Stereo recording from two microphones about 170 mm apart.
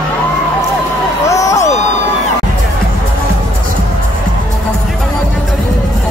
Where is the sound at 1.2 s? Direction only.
20° left (ahead or behind).